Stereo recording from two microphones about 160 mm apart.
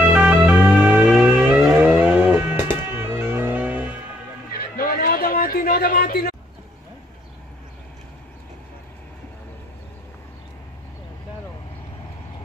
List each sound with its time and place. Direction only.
0.0 s music: 15° right (ahead or behind)
1.4 s livestock: 5° right (ahead or behind)
3.0 s car: 15° right (ahead or behind)
4.5 s a sound: 70° left (ahead or behind)